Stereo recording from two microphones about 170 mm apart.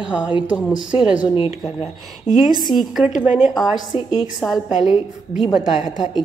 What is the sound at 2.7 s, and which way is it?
A woman's voice, centre (ahead or behind).